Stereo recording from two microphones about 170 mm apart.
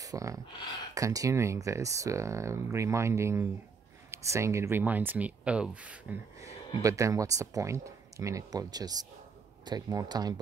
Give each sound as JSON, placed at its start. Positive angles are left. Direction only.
{"t": 0.0, "sound": "speech", "side_deg": -20}
{"t": 6.8, "sound": "speech", "side_deg": -20}